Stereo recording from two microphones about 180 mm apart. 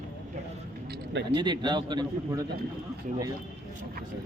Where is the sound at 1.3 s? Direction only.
25° right (ahead or behind).